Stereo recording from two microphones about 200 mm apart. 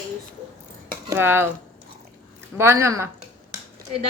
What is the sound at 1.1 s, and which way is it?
Speech, 10° right (ahead or behind).